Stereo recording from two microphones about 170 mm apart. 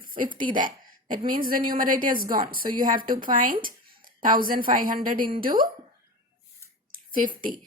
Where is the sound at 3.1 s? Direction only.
55° right (ahead or behind).